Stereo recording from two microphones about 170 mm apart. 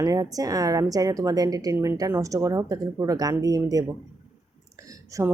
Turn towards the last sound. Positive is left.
turn(degrees=-15)  # may be behind; listen again after turning